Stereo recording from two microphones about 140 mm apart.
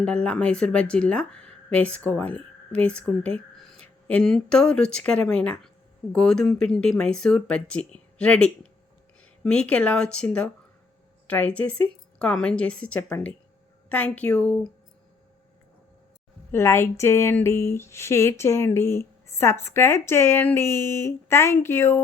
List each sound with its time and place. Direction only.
0.0 s speech: 5° left (ahead or behind)
16.5 s speech: 15° left (ahead or behind)